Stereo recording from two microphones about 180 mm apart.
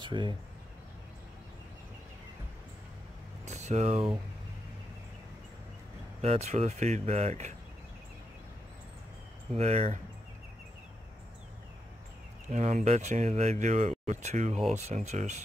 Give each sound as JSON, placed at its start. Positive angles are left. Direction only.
{"t": 0.0, "sound": "speech", "side_deg": -25}
{"t": 3.4, "sound": "speech", "side_deg": -40}
{"t": 6.2, "sound": "speech", "side_deg": -35}
{"t": 9.6, "sound": "speech", "side_deg": -35}
{"t": 12.4, "sound": "speech", "side_deg": -40}